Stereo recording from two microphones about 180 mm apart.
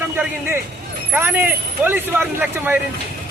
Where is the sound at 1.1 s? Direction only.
10° right (ahead or behind).